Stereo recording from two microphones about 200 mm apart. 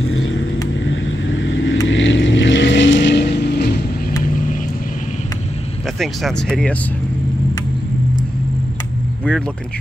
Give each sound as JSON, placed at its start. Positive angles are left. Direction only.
{"t": 0.0, "sound": "vehicle", "side_deg": 85}
{"t": 0.8, "sound": "vehicle", "side_deg": 70}
{"t": 5.9, "sound": "speech", "side_deg": 5}